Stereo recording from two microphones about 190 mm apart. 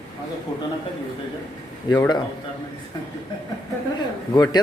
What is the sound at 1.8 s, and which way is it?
Speech, 20° left (ahead or behind).